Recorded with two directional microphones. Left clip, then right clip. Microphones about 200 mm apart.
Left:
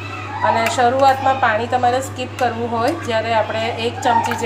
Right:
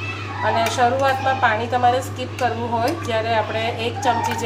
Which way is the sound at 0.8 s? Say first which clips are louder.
Left 5 dB; 15° left (ahead or behind).